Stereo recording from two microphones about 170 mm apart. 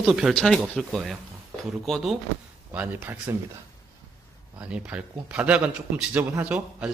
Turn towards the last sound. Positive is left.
turn(degrees=-10)  # may be behind; listen again after turning